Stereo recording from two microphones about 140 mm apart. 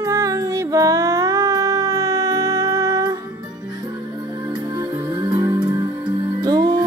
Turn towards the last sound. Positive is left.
turn(degrees=-30)  # may be behind; listen again after turning